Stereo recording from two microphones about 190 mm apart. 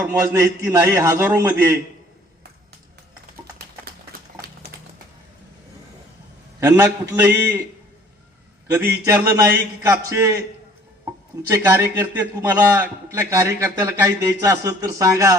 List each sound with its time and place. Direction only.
0.1 s a man's voice: 15° right (ahead or behind)
6.6 s a man's voice: 15° right (ahead or behind)
8.6 s a man's voice: 15° right (ahead or behind)
11.4 s a man's voice: 15° right (ahead or behind)